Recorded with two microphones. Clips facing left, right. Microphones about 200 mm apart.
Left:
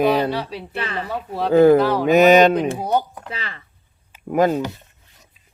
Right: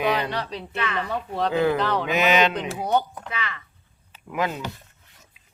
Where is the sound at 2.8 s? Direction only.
10° left (ahead or behind).